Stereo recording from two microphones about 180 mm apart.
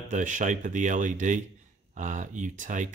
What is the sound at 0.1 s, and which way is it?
Speech, 45° right (ahead or behind).